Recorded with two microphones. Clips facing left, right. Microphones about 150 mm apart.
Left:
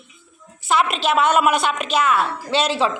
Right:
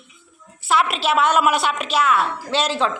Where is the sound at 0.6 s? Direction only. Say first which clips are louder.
Even; centre (ahead or behind).